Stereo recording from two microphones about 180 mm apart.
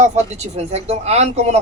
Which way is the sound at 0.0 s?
35° right (ahead or behind).